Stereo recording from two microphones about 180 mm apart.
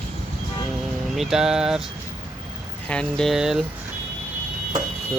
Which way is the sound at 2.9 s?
5° left (ahead or behind).